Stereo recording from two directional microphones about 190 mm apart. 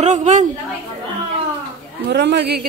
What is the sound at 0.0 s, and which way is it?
Speech, 35° right (ahead or behind).